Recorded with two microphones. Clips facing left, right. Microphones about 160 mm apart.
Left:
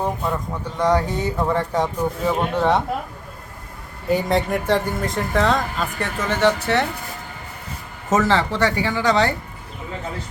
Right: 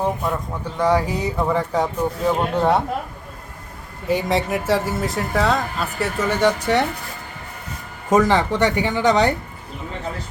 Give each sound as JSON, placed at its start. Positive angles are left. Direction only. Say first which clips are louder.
{"t": 0.0, "sound": "a sound", "louder": "right 1 dB", "side_deg": -5}
{"t": 0.8, "sound": "speech", "louder": "even", "side_deg": -5}
{"t": 4.1, "sound": "speech", "louder": "left 1 dB", "side_deg": 0}
{"t": 8.1, "sound": "speech", "louder": "right 2 dB", "side_deg": -15}